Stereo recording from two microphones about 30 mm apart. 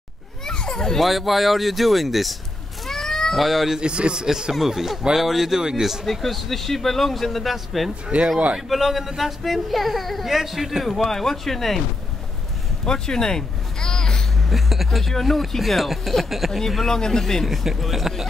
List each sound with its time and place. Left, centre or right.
0.5 s children playing: left
0.9 s speech: centre
2.9 s cat: centre
3.3 s speech: centre
3.8 s a man's voice: right; by 5.6 s centre
6.0 s speech: centre
8.1 s speech: right
8.6 s a man's voice: centre
10.9 s speech: centre
12.8 s speech: left
14.5 s a man's voice: centre
16.5 s speech: centre
17.5 s speech: centre